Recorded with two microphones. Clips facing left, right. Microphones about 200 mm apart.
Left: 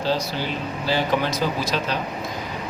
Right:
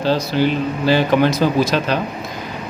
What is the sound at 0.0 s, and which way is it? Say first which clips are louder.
Speech: right 7 dB; 70° right (ahead or behind).